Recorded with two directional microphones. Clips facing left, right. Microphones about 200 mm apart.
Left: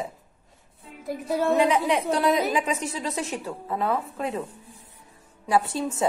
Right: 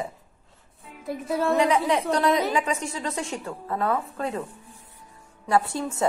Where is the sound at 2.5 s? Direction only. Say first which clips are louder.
Even; 20° left (ahead or behind).